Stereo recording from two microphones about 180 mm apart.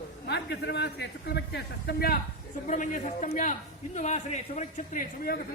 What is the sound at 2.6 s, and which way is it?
A man's voice, 45° left (ahead or behind).